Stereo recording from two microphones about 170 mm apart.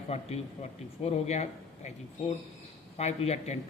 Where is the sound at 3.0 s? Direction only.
40° left (ahead or behind).